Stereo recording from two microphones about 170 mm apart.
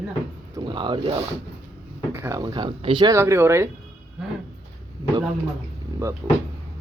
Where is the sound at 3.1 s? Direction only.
15° right (ahead or behind).